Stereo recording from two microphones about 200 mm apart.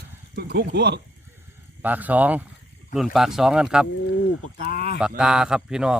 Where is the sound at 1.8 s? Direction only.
10° right (ahead or behind).